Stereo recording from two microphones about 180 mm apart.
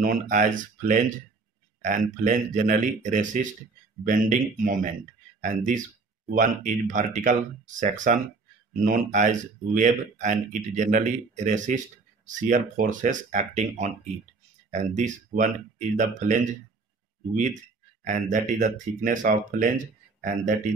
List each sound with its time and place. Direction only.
0.0 s speech: 45° right (ahead or behind)
18.0 s speech: 45° right (ahead or behind)